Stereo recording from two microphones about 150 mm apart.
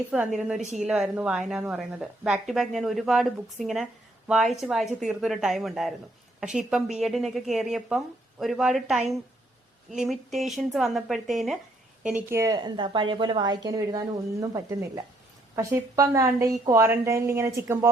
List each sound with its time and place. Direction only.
0.3 s a woman's voice: 5° right (ahead or behind)
12.3 s a woman's voice: 20° right (ahead or behind)
12.5 s a woman's voice: 30° right (ahead or behind)